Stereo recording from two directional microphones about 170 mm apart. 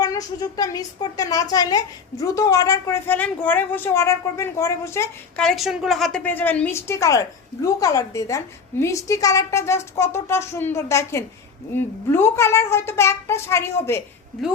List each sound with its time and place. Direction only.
0.0 s a woman's voice: 20° left (ahead or behind)
5.4 s a woman's voice: centre (ahead or behind)